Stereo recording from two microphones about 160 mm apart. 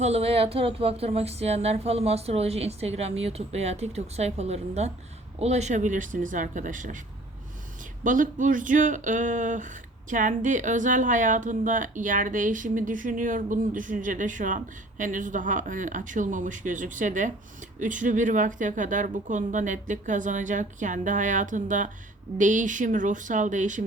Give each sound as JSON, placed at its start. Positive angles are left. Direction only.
{"t": 0.0, "sound": "speech", "side_deg": -40}
{"t": 8.0, "sound": "speech", "side_deg": -55}